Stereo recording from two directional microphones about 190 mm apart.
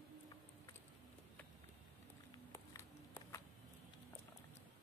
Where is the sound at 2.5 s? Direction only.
15° left (ahead or behind).